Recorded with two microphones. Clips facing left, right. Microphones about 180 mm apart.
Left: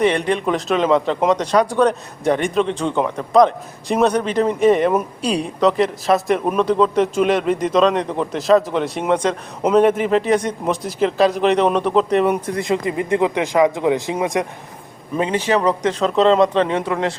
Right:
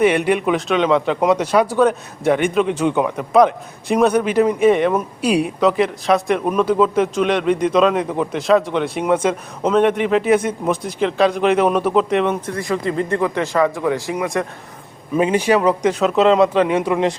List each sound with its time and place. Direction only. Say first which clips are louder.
0.0 s speech: right 2 dB; 5° right (ahead or behind)
5.2 s speech: right 3 dB; 5° right (ahead or behind)
9.6 s speech: left 1 dB; 5° left (ahead or behind)
12.3 s speech: left 2 dB; 20° left (ahead or behind)
15.1 s speech: right 3 dB; 10° right (ahead or behind)